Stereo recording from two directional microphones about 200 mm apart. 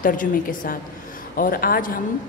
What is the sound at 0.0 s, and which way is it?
A woman's voice, 40° left (ahead or behind).